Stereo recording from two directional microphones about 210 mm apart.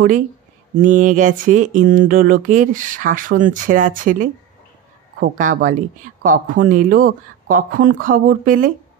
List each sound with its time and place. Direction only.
0.7 s speech: 35° right (ahead or behind)